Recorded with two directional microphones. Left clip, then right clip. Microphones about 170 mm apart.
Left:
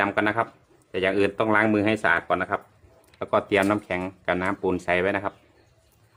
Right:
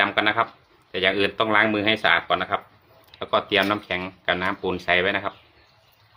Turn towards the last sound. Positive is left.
turn(degrees=35)  # may be behind; listen again after turning